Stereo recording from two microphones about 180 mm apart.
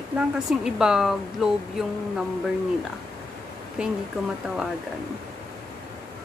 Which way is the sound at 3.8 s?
5° right (ahead or behind).